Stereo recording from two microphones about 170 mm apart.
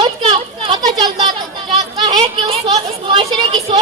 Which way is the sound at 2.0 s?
25° right (ahead or behind).